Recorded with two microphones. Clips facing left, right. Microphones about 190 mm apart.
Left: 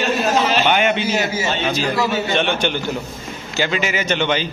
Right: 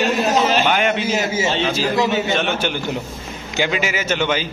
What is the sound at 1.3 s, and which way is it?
Speech, 25° right (ahead or behind).